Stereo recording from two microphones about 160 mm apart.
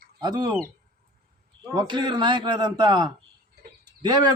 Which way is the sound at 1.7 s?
25° right (ahead or behind).